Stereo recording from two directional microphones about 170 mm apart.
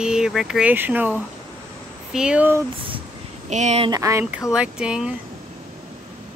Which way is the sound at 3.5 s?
40° right (ahead or behind).